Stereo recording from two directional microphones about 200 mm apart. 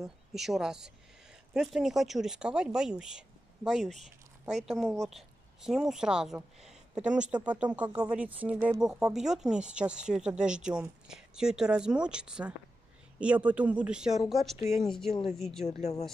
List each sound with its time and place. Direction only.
0.0 s speech: centre (ahead or behind)
15.8 s speech: 35° left (ahead or behind)